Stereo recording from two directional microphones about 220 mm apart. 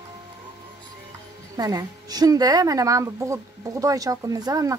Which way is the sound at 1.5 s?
15° right (ahead or behind).